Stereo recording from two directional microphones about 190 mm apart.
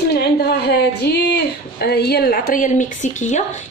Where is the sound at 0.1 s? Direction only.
55° left (ahead or behind).